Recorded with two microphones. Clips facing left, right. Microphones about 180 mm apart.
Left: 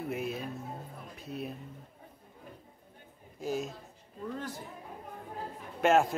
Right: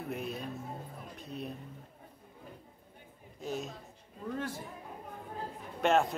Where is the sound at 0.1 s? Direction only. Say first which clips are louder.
Left 2 dB; 5° left (ahead or behind).